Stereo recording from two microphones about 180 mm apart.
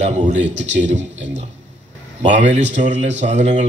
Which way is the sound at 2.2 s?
40° right (ahead or behind).